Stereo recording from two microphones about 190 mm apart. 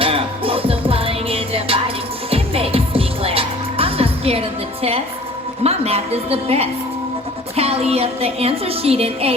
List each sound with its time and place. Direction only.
0.0 s music: 30° right (ahead or behind)